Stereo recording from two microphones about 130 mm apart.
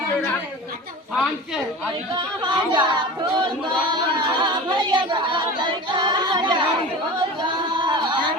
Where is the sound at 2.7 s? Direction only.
35° right (ahead or behind).